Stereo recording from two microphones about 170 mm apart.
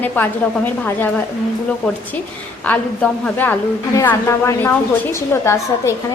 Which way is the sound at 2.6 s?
10° left (ahead or behind).